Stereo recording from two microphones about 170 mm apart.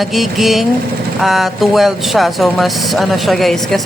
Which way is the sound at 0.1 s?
Centre (ahead or behind).